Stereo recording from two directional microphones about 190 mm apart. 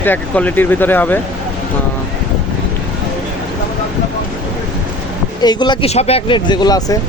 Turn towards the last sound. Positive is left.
turn(degrees=20)  # may be behind; listen again after turning